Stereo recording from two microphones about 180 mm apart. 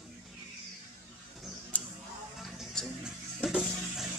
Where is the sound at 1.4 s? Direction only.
Centre (ahead or behind).